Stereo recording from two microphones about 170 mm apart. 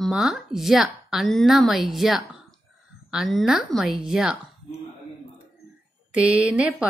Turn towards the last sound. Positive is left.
turn(degrees=-5)  # may be behind; listen again after turning